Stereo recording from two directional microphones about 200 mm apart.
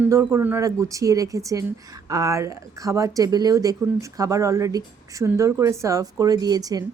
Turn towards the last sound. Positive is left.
turn(degrees=-20)  # may be behind; listen again after turning